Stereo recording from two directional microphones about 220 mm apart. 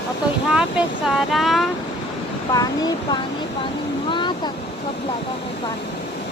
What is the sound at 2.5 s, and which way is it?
Speech, 15° left (ahead or behind).